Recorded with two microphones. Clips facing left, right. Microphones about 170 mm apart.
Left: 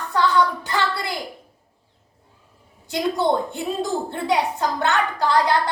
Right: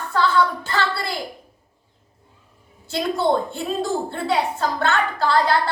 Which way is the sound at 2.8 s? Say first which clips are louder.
Even; 15° left (ahead or behind).